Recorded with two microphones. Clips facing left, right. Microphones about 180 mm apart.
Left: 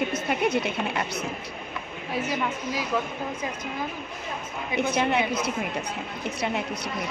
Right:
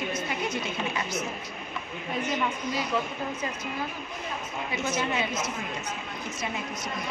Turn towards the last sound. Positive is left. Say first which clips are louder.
# left 5 dB
turn(degrees=60)  # may be behind; listen again after turning